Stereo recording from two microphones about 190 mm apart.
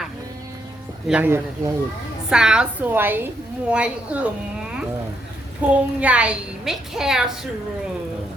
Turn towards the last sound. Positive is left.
turn(degrees=-5)  # may be behind; listen again after turning